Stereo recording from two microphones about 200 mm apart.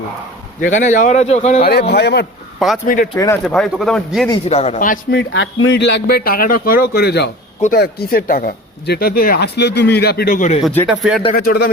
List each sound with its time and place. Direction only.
0.6 s a man's voice: 40° left (ahead or behind)
1.9 s a man's voice: 55° left (ahead or behind)
2.8 s a man's voice: 40° left (ahead or behind)
3.2 s speech: 15° left (ahead or behind)
3.4 s speech: centre (ahead or behind)
4.4 s a man's voice: 30° left (ahead or behind)
5.1 s speech: 65° left (ahead or behind); by 10.6 s 40° left (ahead or behind)
10.6 s speech: 10° left (ahead or behind)
11.3 s speech: 50° left (ahead or behind)